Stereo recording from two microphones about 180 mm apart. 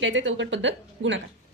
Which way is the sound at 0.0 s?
90° right.